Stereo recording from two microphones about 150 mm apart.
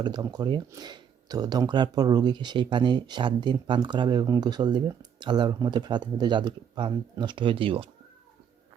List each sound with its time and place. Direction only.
0.0 s speech: 30° right (ahead or behind)